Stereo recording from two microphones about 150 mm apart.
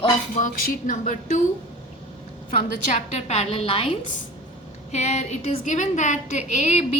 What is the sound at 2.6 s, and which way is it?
A woman's voice, 50° left (ahead or behind).